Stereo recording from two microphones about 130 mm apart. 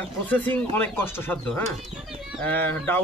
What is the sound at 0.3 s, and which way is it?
Speech, 15° left (ahead or behind).